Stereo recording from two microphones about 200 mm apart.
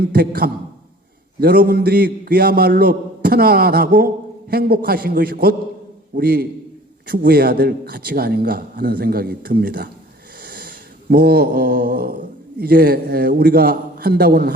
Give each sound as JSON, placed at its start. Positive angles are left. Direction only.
{"t": 0.0, "sound": "a man's voice", "side_deg": -50}